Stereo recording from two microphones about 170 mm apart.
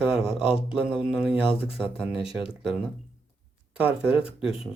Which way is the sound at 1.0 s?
5° right (ahead or behind).